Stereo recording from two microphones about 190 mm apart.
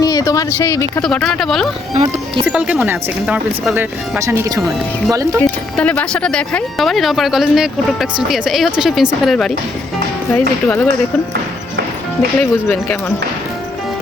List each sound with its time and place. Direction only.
0.0 s speech: 20° left (ahead or behind)
1.0 s speech: centre (ahead or behind)
1.9 s speech: 35° right (ahead or behind)
2.5 s speech: 5° right (ahead or behind)
4.2 s speech: 15° right (ahead or behind)
5.4 s speech: 5° left (ahead or behind)
12.4 s speech: 5° left (ahead or behind)